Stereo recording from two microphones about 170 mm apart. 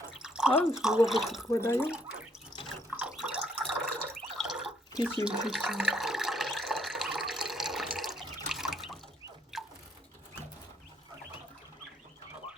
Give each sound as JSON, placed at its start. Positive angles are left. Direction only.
{"t": 0.2, "sound": "drip", "side_deg": -5}
{"t": 0.6, "sound": "speech", "side_deg": -5}
{"t": 1.5, "sound": "speech", "side_deg": 15}
{"t": 2.9, "sound": "drip", "side_deg": -5}
{"t": 4.4, "sound": "water", "side_deg": 0}
{"t": 9.5, "sound": "a sound", "side_deg": 0}